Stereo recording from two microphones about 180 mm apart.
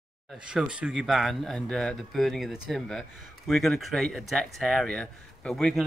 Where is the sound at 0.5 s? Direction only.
5° right (ahead or behind).